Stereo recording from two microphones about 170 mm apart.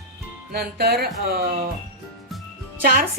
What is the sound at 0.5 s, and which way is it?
Speech, 65° right (ahead or behind).